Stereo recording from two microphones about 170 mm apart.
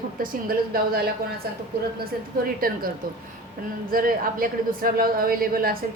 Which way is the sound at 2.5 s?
60° right (ahead or behind).